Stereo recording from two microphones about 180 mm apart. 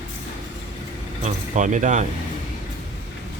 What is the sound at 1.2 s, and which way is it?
Speech, 40° right (ahead or behind).